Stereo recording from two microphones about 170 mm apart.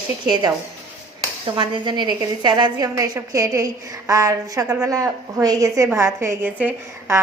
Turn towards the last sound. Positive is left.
turn(degrees=-10)  # may be behind; listen again after turning